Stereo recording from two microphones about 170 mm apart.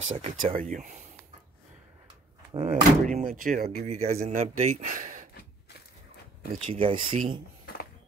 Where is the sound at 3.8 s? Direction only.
40° right (ahead or behind).